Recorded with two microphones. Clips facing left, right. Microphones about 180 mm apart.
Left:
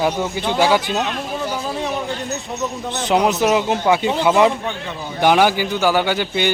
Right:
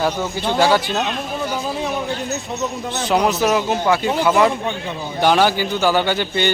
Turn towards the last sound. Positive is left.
turn(degrees=10)  # may be behind; listen again after turning